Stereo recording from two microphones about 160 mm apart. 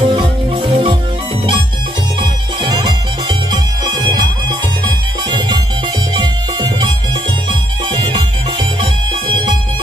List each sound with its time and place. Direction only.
0.0 s music: 30° right (ahead or behind)
2.6 s music: 30° right (ahead or behind)
6.1 s music: 30° right (ahead or behind)
7.9 s music: 30° right (ahead or behind)